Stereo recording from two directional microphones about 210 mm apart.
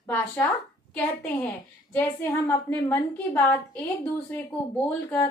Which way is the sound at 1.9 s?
10° left (ahead or behind).